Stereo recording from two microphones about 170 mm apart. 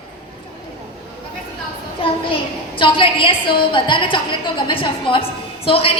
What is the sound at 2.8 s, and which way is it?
A woman's voice, 30° left (ahead or behind).